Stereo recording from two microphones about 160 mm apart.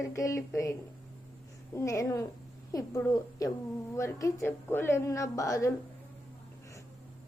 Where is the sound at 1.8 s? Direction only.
20° left (ahead or behind).